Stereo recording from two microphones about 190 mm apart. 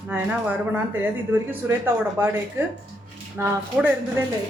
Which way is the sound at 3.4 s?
10° right (ahead or behind).